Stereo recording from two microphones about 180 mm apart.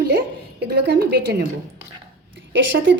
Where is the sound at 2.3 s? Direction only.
90° right.